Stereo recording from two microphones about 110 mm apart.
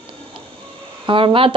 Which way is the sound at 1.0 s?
50° right (ahead or behind).